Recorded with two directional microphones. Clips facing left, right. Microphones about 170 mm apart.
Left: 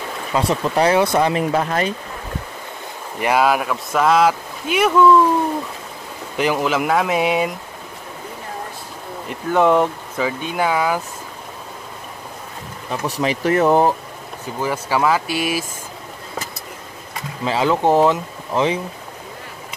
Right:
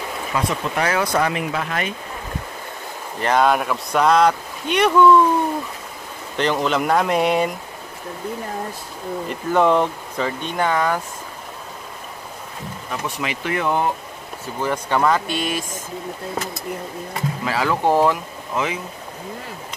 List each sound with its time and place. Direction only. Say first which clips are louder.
0.3 s speech: left 5 dB; 30° left (ahead or behind)
1.4 s speech: left 5 dB; 40° left (ahead or behind)
3.2 s speech: left 1 dB; 10° left (ahead or behind)
6.3 s speech: left 1 dB; 10° left (ahead or behind)
9.3 s speech: left 2 dB; centre (ahead or behind)
13.0 s speech: left 8 dB; 35° left (ahead or behind)
14.4 s speech: left 1 dB; 5° left (ahead or behind)
17.5 s speech: left 3 dB; 25° left (ahead or behind)